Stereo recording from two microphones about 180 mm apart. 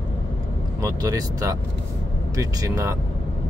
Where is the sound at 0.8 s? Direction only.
20° right (ahead or behind).